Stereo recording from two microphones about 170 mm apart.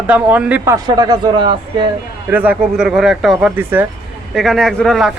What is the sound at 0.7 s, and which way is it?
Speech, 25° right (ahead or behind).